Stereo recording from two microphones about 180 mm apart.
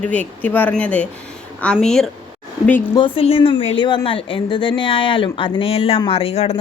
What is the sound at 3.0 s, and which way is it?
A woman's voice, 30° left (ahead or behind).